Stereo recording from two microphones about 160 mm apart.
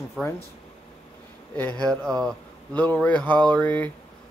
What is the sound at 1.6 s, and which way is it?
Speech, 10° left (ahead or behind).